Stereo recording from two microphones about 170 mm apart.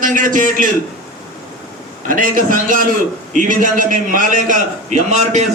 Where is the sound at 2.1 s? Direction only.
50° right (ahead or behind).